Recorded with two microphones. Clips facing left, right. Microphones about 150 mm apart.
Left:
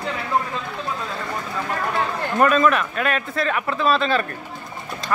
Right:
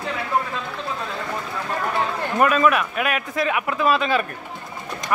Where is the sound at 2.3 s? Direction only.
10° right (ahead or behind).